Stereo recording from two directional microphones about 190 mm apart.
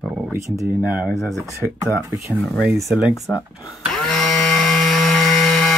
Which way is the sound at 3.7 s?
Centre (ahead or behind).